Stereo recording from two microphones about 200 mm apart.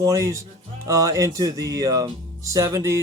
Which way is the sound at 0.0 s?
15° right (ahead or behind).